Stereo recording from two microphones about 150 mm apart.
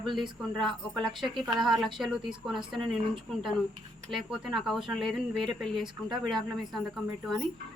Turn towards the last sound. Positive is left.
turn(degrees=0)  # may be behind; listen again after turning